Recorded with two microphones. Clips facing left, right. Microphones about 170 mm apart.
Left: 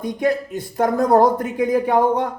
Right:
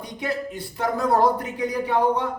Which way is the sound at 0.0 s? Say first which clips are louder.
Left 8 dB; 50° left (ahead or behind).